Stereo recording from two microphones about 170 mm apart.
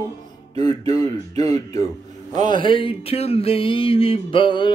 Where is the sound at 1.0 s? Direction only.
20° left (ahead or behind).